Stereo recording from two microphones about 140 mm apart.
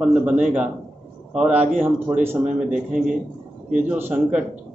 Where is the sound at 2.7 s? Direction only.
5° right (ahead or behind).